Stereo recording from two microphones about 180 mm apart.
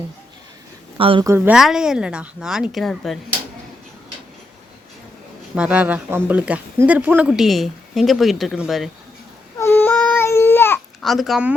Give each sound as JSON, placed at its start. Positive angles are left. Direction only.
{"t": 0.9, "sound": "speech", "side_deg": -30}
{"t": 1.2, "sound": "a woman's voice", "side_deg": -15}
{"t": 1.5, "sound": "speech", "side_deg": -5}
{"t": 5.5, "sound": "speech", "side_deg": -5}
{"t": 9.6, "sound": "baby cry", "side_deg": 10}
{"t": 11.0, "sound": "speech", "side_deg": 0}